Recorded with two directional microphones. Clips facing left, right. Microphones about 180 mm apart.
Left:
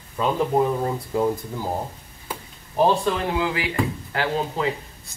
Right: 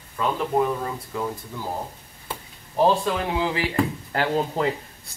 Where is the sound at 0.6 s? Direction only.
30° left (ahead or behind).